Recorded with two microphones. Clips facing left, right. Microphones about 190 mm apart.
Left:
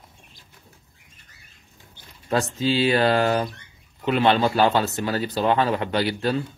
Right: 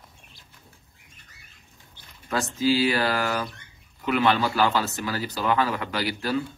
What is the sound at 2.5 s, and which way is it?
Speech, 25° left (ahead or behind).